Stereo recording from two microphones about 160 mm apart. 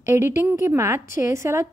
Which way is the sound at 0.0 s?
15° right (ahead or behind).